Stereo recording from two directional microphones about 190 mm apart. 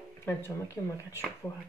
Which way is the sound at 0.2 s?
15° left (ahead or behind).